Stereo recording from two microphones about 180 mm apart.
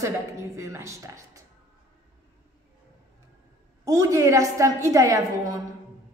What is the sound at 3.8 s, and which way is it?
A woman's voice, 15° right (ahead or behind).